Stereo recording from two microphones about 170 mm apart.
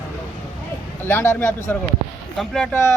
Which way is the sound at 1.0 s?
15° left (ahead or behind).